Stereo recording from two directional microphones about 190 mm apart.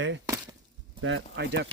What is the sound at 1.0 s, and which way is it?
Speech, 70° right (ahead or behind).